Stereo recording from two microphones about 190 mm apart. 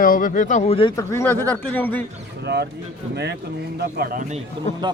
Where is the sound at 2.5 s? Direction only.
60° right (ahead or behind).